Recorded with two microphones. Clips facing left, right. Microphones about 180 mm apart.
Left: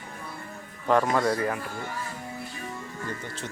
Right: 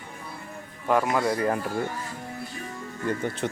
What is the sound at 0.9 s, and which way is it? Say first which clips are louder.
Speech: even; 5° right (ahead or behind).